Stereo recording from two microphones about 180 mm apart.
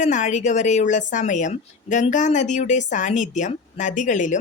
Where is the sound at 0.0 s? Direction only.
40° left (ahead or behind).